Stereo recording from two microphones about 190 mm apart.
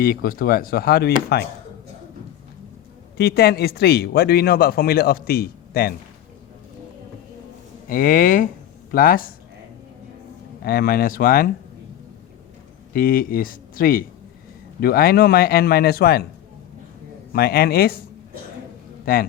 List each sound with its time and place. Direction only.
0.0 s speech: 50° left (ahead or behind)
3.2 s speech: 55° left (ahead or behind)
7.9 s speech: 50° left (ahead or behind)
10.6 s speech: 55° left (ahead or behind)
12.9 s speech: 50° left (ahead or behind)
17.3 s speech: 55° left (ahead or behind)
19.1 s speech: 50° left (ahead or behind)